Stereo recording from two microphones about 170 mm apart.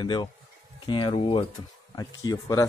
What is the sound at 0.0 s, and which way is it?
Speech, 25° left (ahead or behind).